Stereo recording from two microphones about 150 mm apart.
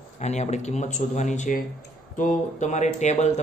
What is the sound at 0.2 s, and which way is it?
Speech, 50° left (ahead or behind).